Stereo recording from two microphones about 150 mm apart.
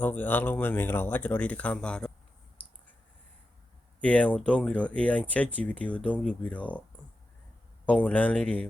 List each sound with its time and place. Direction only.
0.0 s speech: 10° left (ahead or behind)
4.0 s speech: 10° left (ahead or behind)
7.9 s speech: 10° left (ahead or behind)